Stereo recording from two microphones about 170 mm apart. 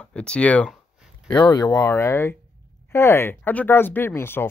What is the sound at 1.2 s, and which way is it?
Speech, 25° left (ahead or behind).